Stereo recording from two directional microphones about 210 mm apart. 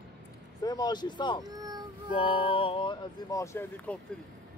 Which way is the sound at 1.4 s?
20° right (ahead or behind).